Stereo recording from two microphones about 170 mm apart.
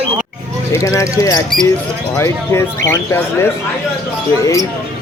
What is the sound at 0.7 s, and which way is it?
Speech, 15° left (ahead or behind).